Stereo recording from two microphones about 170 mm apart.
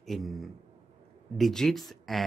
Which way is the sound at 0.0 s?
Centre (ahead or behind).